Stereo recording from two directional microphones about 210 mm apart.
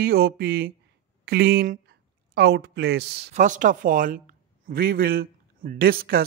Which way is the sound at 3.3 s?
35° right (ahead or behind).